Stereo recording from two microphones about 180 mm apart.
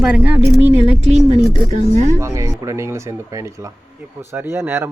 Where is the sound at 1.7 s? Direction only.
40° right (ahead or behind).